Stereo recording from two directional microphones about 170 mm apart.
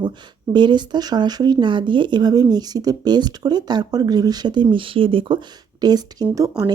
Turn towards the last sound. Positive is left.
turn(degrees=-20)  # may be behind; listen again after turning